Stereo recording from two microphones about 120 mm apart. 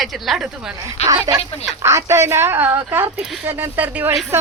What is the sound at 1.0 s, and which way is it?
Speech, 30° right (ahead or behind).